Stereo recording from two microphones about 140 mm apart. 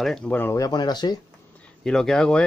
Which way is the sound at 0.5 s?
30° left (ahead or behind).